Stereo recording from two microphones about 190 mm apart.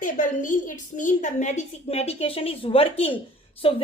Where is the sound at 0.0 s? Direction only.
45° left (ahead or behind).